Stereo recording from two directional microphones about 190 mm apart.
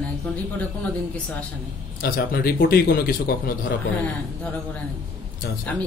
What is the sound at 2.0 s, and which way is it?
Speech, 50° left (ahead or behind).